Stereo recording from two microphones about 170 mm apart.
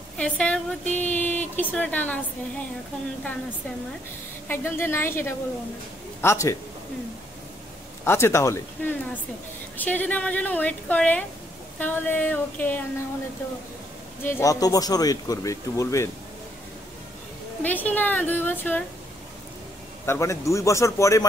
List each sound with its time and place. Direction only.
0.2 s a woman's voice: 5° left (ahead or behind)
4.5 s a woman's voice: 15° left (ahead or behind)
8.0 s a woman's voice: 15° left (ahead or behind)
14.2 s speech: 15° left (ahead or behind)
17.6 s a woman's voice: 10° left (ahead or behind)
20.1 s a woman's voice: 15° left (ahead or behind)